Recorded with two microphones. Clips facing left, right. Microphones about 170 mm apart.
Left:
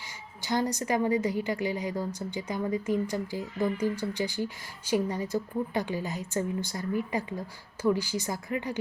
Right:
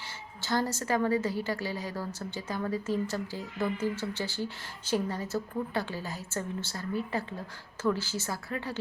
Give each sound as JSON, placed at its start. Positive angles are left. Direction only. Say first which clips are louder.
{"t": 0.4, "sound": "a woman's voice", "louder": "left 2 dB", "side_deg": 15}